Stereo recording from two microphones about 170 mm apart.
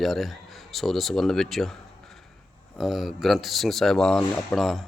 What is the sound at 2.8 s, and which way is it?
Speech, centre (ahead or behind).